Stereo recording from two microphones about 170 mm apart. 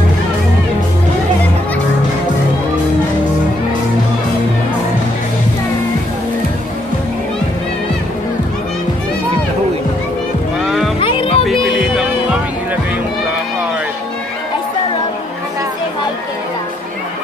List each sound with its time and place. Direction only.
10.6 s music: centre (ahead or behind)
11.0 s music: 30° left (ahead or behind)
11.4 s music: centre (ahead or behind)